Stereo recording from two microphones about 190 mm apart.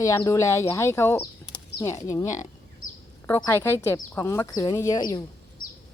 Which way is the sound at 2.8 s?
45° left (ahead or behind).